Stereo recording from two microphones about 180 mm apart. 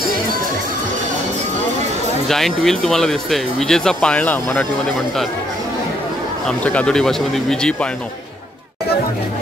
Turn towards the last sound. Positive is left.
turn(degrees=5)  # may be behind; listen again after turning